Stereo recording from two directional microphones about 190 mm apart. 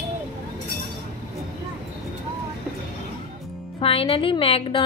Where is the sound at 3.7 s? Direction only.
30° left (ahead or behind).